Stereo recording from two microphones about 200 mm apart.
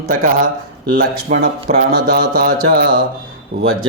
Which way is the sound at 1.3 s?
35° right (ahead or behind).